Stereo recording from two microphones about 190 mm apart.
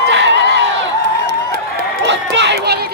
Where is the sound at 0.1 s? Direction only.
65° right (ahead or behind).